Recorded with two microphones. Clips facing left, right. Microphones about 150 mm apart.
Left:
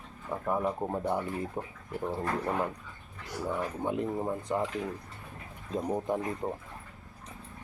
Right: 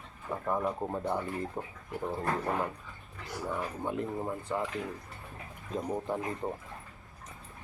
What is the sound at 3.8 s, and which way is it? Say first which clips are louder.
Speech: left 3 dB; 15° left (ahead or behind).